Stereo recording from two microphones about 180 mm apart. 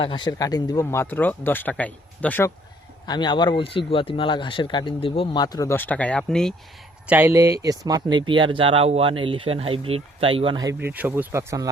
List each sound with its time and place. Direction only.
0.0 s speech: 25° left (ahead or behind); by 2.5 s 10° left (ahead or behind)
3.1 s speech: 25° left (ahead or behind); by 6.5 s 5° left (ahead or behind)
7.1 s speech: 10° right (ahead or behind)